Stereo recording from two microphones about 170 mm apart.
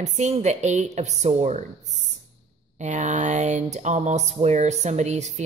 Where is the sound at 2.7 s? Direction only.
45° right (ahead or behind).